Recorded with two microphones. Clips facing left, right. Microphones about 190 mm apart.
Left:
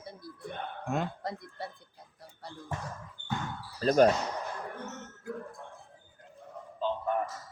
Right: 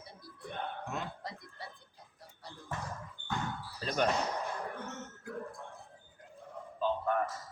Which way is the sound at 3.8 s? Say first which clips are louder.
Left 10 dB; 40° left (ahead or behind).